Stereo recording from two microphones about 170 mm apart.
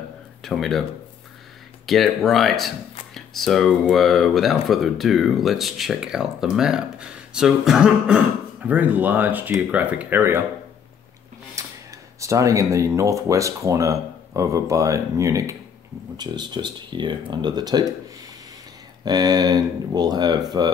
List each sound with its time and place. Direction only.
0.4 s speech: centre (ahead or behind)
1.9 s speech: centre (ahead or behind)
11.5 s speech: 20° right (ahead or behind)
19.0 s speech: 25° right (ahead or behind)